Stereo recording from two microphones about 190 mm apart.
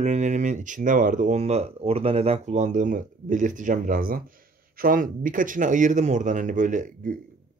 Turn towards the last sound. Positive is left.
turn(degrees=-40)  # may be behind; listen again after turning